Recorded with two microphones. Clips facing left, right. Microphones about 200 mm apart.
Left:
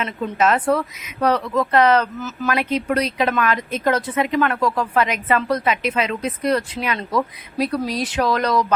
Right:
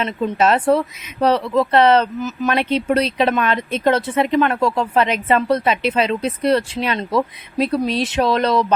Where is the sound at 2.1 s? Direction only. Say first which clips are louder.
Right 3 dB; 15° right (ahead or behind).